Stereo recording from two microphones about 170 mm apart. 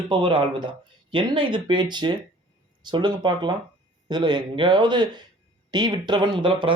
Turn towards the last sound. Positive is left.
turn(degrees=-30)  # may be behind; listen again after turning